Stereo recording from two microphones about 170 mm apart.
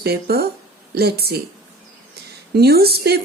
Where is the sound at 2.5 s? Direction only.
65° right (ahead or behind).